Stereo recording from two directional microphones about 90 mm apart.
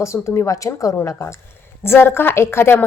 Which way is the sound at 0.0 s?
35° left (ahead or behind).